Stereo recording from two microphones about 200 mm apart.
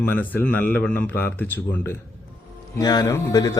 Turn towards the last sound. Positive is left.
turn(degrees=15)  # may be behind; listen again after turning